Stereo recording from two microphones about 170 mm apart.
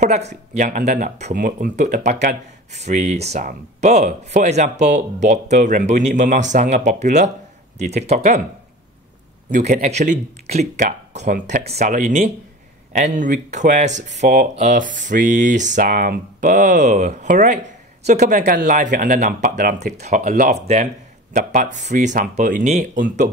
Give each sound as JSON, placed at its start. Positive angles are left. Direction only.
{"t": 0.0, "sound": "speech", "side_deg": -40}
{"t": 9.5, "sound": "speech", "side_deg": -45}
{"t": 18.4, "sound": "speech", "side_deg": -55}
{"t": 20.2, "sound": "speech", "side_deg": -55}